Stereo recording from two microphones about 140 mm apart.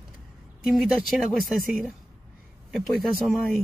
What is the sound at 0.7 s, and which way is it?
Speech, centre (ahead or behind).